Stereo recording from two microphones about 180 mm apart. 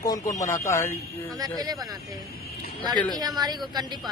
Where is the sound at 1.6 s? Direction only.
20° right (ahead or behind).